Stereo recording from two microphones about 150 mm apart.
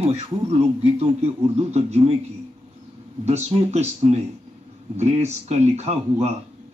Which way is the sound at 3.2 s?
45° right (ahead or behind).